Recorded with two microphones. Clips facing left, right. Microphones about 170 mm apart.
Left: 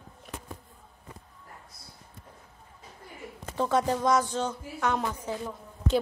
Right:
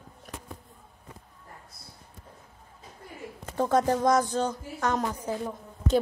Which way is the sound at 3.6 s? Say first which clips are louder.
Right 2 dB; 45° right (ahead or behind).